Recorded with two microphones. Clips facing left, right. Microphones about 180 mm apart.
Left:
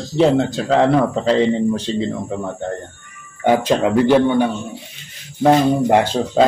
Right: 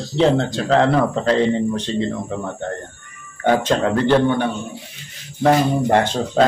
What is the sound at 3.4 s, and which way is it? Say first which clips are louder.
A man's voice: left 2 dB; 10° left (ahead or behind).